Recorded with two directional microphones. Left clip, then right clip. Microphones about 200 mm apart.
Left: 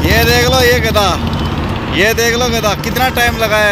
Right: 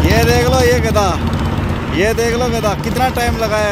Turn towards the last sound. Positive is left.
turn(degrees=-5)  # may be behind; listen again after turning